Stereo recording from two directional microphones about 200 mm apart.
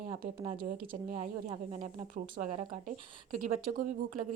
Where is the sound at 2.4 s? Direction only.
50° right (ahead or behind).